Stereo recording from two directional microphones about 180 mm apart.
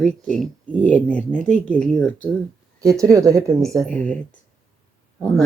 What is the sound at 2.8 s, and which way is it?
Speech, 20° right (ahead or behind).